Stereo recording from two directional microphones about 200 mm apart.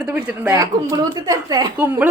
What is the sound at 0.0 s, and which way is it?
Speech, 5° right (ahead or behind).